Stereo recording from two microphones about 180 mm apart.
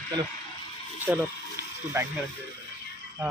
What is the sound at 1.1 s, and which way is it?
Speech, 10° right (ahead or behind).